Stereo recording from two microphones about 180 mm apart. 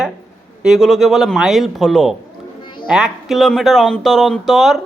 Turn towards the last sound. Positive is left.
turn(degrees=0)  # may be behind; listen again after turning